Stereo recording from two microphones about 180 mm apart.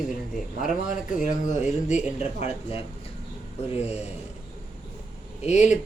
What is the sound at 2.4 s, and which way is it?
Speech, 30° left (ahead or behind).